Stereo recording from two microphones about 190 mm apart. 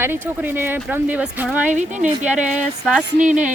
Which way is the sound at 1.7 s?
40° right (ahead or behind).